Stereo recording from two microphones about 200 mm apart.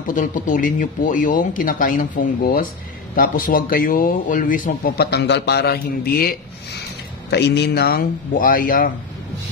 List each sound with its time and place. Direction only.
0.0 s speech: 40° left (ahead or behind)